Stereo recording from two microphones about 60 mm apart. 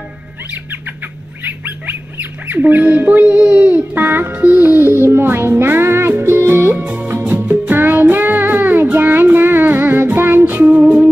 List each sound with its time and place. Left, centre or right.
1.4 s speech: right
4.3 s music: right
6.8 s music: right